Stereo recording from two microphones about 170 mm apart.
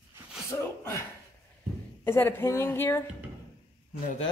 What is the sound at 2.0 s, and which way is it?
Speech, 15° left (ahead or behind).